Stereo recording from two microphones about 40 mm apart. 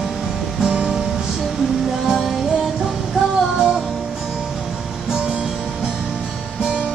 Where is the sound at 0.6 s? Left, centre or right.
Centre.